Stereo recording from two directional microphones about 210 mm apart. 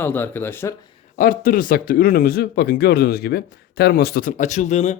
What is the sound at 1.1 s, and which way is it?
Speech, 40° left (ahead or behind).